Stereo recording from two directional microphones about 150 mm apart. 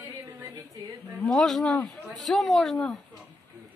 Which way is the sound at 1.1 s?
5° left (ahead or behind).